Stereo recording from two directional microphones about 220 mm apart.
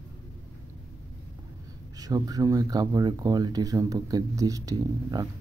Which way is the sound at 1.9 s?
15° right (ahead or behind).